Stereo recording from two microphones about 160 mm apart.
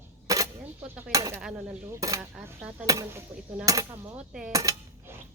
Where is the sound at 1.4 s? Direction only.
5° right (ahead or behind).